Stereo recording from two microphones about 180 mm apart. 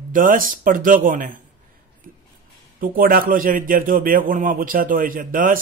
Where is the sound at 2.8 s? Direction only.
50° right (ahead or behind).